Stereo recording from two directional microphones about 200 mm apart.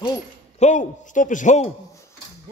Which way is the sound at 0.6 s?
40° left (ahead or behind).